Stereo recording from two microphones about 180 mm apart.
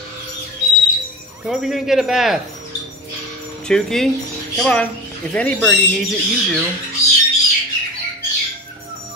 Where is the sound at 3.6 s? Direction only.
5° left (ahead or behind).